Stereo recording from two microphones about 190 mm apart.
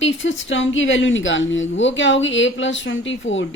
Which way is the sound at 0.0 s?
80° left.